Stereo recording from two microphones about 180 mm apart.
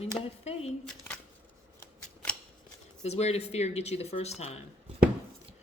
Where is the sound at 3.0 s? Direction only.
35° left (ahead or behind).